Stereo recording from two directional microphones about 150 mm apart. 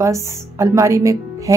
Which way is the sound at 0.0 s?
20° right (ahead or behind).